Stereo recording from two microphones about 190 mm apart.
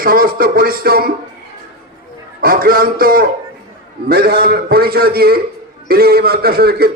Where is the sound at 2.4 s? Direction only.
50° right (ahead or behind).